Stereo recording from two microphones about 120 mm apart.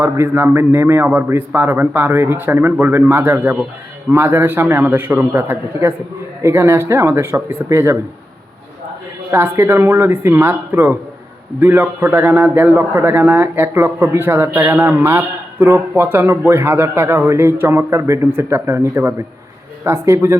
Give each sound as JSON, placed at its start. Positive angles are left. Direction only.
{"t": 0.0, "sound": "a man's voice", "side_deg": -20}
{"t": 9.3, "sound": "a man's voice", "side_deg": -20}